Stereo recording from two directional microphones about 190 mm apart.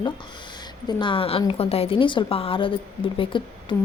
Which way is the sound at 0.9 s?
25° left (ahead or behind).